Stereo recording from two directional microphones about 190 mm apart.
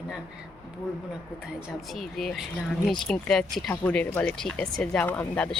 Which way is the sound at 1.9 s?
Centre (ahead or behind).